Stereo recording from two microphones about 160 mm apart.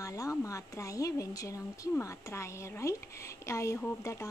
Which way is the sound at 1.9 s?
15° left (ahead or behind).